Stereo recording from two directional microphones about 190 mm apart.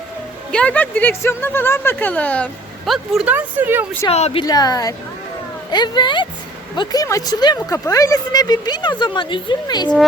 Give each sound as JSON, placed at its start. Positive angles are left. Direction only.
{"t": 0.5, "sound": "speech", "side_deg": 5}
{"t": 4.1, "sound": "a woman's voice", "side_deg": 30}